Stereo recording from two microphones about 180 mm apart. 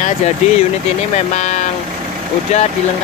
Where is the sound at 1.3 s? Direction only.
40° left (ahead or behind).